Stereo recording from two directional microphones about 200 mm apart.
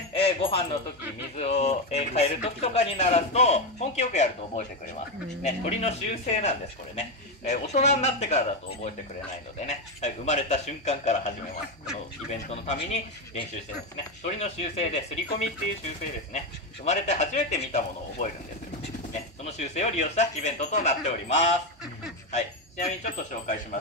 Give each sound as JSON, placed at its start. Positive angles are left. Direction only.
{"t": 0.1, "sound": "music", "side_deg": 30}
{"t": 1.3, "sound": "speech", "side_deg": 35}
{"t": 16.8, "sound": "speech", "side_deg": 35}
{"t": 19.4, "sound": "speech", "side_deg": 35}